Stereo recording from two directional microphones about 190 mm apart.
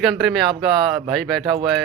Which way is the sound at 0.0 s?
Centre (ahead or behind).